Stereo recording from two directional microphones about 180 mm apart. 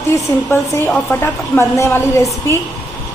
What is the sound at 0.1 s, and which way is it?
A woman's voice, 10° left (ahead or behind).